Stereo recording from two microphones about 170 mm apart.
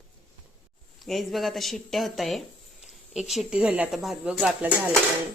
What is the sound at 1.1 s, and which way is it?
Speech, centre (ahead or behind).